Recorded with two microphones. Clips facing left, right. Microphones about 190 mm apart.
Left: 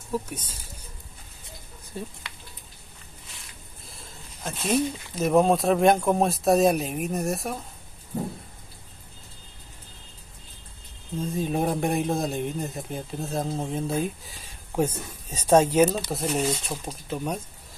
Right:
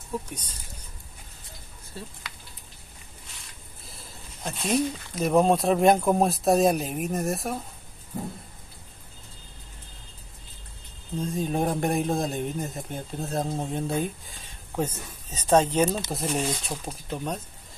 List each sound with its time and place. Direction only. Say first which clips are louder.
0.3 s speech: left 2 dB; 10° left (ahead or behind)
2.0 s speech: left 5 dB; 15° left (ahead or behind)
3.8 s speech: even; centre (ahead or behind)
11.1 s speech: even; centre (ahead or behind)